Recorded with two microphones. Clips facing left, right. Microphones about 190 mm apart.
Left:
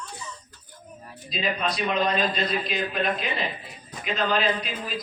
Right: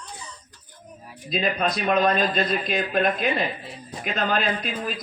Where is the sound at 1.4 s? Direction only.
50° right (ahead or behind).